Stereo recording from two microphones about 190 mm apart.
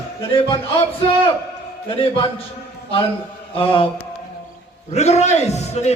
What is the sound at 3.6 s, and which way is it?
Speech, 30° left (ahead or behind).